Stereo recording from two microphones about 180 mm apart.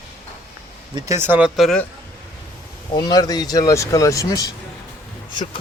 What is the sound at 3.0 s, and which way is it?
Speech, 20° left (ahead or behind).